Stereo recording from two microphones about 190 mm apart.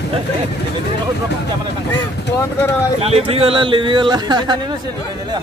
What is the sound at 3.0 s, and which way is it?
Speech, 30° right (ahead or behind).